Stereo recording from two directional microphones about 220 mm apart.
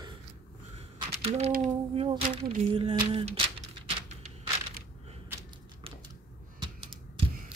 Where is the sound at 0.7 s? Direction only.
25° right (ahead or behind).